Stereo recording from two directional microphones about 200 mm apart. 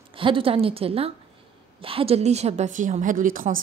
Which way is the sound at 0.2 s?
25° right (ahead or behind).